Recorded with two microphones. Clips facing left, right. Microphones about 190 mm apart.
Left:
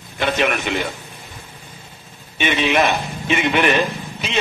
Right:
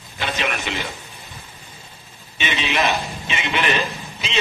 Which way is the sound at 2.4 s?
50° left (ahead or behind).